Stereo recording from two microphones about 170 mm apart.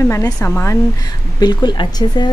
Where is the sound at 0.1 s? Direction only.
20° left (ahead or behind).